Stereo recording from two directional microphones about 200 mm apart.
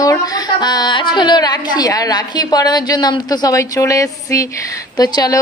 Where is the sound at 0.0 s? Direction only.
20° left (ahead or behind).